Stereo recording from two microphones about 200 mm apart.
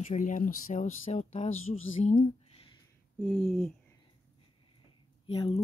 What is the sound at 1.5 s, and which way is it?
Speech, 90° left.